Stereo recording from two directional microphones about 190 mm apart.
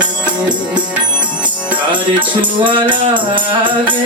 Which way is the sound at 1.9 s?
25° right (ahead or behind).